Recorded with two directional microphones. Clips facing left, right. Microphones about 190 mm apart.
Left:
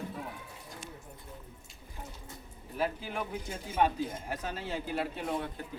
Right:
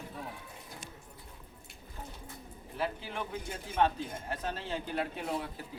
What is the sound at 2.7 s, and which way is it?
Speech, 10° left (ahead or behind).